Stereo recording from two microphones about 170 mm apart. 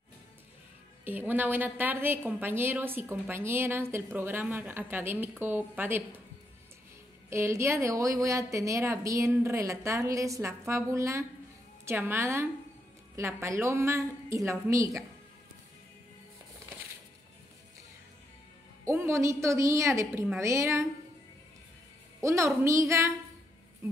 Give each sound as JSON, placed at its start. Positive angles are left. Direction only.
{"t": 1.0, "sound": "a woman's voice", "side_deg": -10}
{"t": 7.2, "sound": "a woman's voice", "side_deg": -15}
{"t": 18.9, "sound": "a woman's voice", "side_deg": -15}
{"t": 22.2, "sound": "a woman's voice", "side_deg": -15}